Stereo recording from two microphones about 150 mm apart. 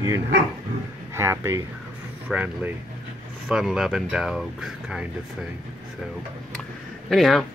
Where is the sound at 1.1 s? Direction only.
15° right (ahead or behind).